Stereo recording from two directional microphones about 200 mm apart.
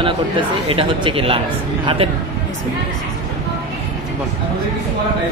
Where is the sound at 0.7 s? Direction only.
30° right (ahead or behind).